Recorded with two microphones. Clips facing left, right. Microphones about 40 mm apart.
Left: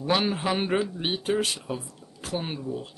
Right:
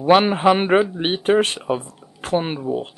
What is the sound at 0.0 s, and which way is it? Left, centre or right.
Speech, right.